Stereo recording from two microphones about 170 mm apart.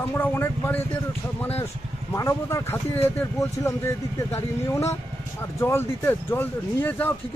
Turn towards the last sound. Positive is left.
turn(degrees=10)  # may be behind; listen again after turning